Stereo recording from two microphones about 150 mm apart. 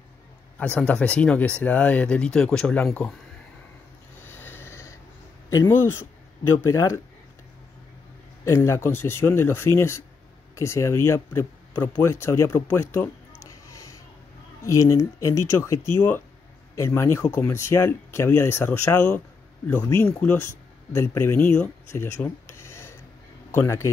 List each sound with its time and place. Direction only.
0.6 s speech: 10° left (ahead or behind)
4.2 s a sound: 15° left (ahead or behind)
5.6 s speech: 15° left (ahead or behind)
8.5 s speech: 20° left (ahead or behind)
13.4 s a sound: 20° left (ahead or behind)
14.6 s speech: 20° left (ahead or behind)
20.1 s speech: 10° left (ahead or behind)